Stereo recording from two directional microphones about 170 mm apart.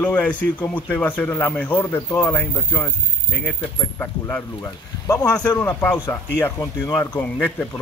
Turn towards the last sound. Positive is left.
turn(degrees=10)  # may be behind; listen again after turning